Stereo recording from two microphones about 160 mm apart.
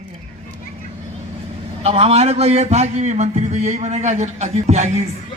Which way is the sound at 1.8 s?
40° right (ahead or behind).